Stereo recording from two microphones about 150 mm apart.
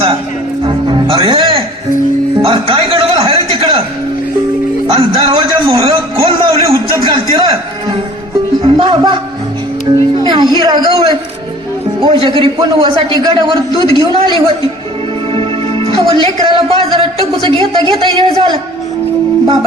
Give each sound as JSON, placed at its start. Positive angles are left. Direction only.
{"t": 0.6, "sound": "music", "side_deg": -30}
{"t": 2.4, "sound": "a sound", "side_deg": -35}
{"t": 4.9, "sound": "a sound", "side_deg": -35}
{"t": 8.6, "sound": "music", "side_deg": -40}
{"t": 10.5, "sound": "a man's voice", "side_deg": -30}
{"t": 15.3, "sound": "a man's voice", "side_deg": -35}